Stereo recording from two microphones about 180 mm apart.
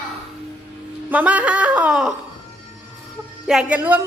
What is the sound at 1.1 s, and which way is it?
A woman's voice, 10° right (ahead or behind).